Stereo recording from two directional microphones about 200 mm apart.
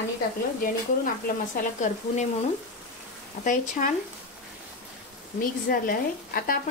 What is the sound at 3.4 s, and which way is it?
Speech, 40° left (ahead or behind).